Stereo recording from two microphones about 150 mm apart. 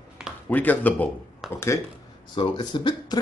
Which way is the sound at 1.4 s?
Centre (ahead or behind).